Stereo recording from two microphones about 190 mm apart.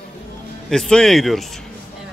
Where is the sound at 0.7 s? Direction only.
5° left (ahead or behind).